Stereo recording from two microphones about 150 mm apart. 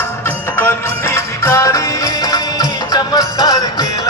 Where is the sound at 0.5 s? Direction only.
15° left (ahead or behind).